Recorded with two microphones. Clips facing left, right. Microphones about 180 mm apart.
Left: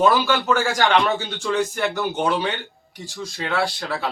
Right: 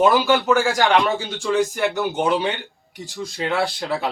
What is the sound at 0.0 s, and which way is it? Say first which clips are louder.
Speech: right 2 dB; 15° right (ahead or behind).